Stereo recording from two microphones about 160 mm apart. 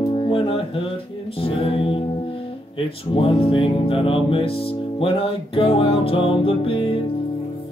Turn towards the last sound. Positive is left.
turn(degrees=35)  # may be behind; listen again after turning